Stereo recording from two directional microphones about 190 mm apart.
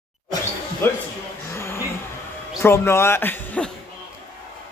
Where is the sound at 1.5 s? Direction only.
15° left (ahead or behind).